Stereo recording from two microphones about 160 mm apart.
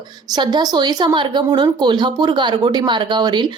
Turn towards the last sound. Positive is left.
turn(degrees=-30)  # may be behind; listen again after turning